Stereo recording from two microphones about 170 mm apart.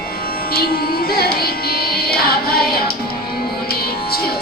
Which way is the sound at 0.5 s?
65° left (ahead or behind).